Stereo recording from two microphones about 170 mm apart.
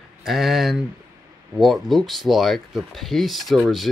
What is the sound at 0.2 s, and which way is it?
Speech, centre (ahead or behind).